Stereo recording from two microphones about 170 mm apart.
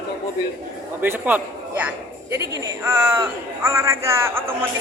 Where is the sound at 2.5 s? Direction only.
15° right (ahead or behind).